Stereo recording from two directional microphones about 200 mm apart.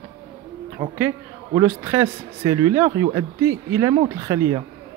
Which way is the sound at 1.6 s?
15° right (ahead or behind).